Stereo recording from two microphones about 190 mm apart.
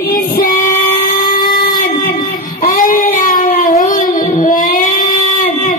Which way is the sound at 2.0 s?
45° left (ahead or behind).